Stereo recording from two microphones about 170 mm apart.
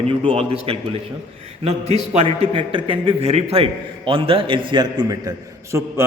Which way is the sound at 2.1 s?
35° right (ahead or behind).